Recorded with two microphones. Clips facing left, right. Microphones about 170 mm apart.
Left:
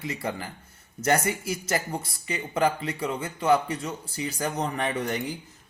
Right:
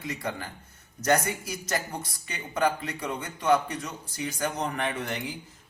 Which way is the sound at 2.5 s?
25° left (ahead or behind).